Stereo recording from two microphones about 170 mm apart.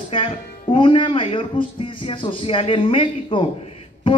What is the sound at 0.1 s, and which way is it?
A man's voice, 30° left (ahead or behind).